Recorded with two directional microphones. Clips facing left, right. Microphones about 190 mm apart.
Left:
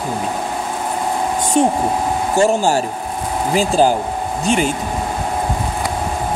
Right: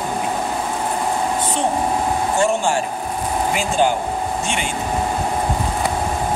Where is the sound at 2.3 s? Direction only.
40° left (ahead or behind).